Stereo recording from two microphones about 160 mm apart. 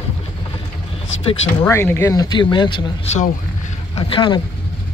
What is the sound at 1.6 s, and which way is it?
Speech, 15° left (ahead or behind).